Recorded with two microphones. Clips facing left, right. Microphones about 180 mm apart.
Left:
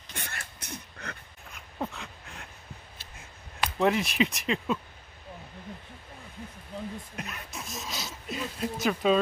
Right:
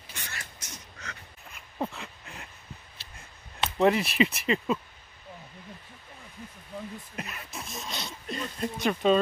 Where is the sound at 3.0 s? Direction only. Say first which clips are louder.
Left 1 dB; 50° left (ahead or behind).